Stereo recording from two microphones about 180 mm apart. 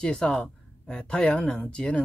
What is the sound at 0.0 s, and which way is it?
Speech, 5° left (ahead or behind).